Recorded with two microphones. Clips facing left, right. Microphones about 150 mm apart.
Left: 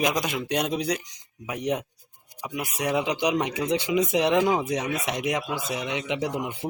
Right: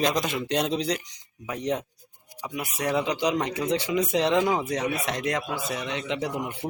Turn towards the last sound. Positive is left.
turn(degrees=20)  # may be behind; listen again after turning